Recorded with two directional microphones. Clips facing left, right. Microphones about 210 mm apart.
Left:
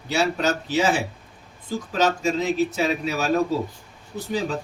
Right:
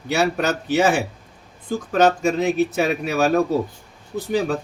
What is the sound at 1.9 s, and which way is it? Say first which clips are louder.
Speech: right 5 dB; 55° right (ahead or behind).